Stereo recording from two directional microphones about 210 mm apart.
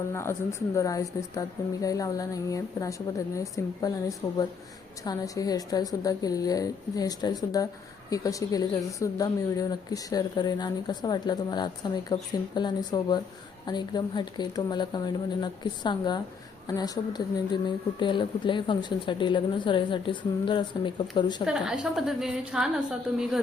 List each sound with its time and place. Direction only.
0.1 s a woman's voice: 10° left (ahead or behind)
21.4 s a woman's voice: 5° right (ahead or behind)